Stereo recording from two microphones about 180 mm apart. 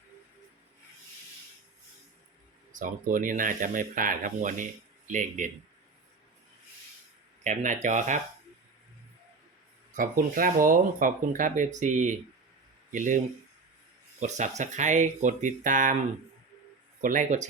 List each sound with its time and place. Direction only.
2.7 s speech: 45° right (ahead or behind)
7.4 s speech: 45° right (ahead or behind)
9.9 s speech: 50° right (ahead or behind)
14.2 s speech: 40° right (ahead or behind)
17.0 s speech: 45° right (ahead or behind)